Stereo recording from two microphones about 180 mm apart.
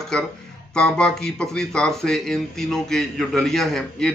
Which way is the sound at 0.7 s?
5° left (ahead or behind).